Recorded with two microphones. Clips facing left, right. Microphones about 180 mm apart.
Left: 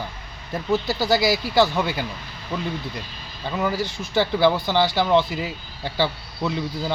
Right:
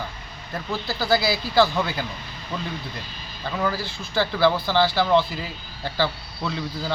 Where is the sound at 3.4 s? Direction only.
15° left (ahead or behind).